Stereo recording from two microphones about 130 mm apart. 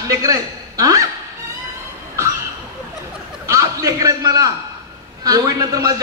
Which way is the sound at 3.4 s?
25° right (ahead or behind).